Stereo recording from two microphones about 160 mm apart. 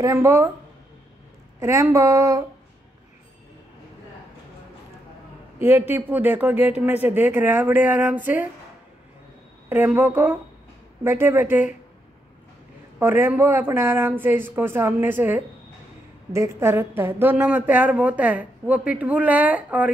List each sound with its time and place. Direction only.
0.0 s speech: 15° right (ahead or behind)
1.6 s speech: 15° right (ahead or behind)
5.6 s speech: 10° right (ahead or behind)
9.7 s speech: 10° right (ahead or behind)
13.0 s speech: 15° right (ahead or behind)